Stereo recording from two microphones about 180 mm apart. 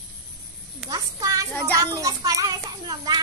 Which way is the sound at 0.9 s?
20° right (ahead or behind).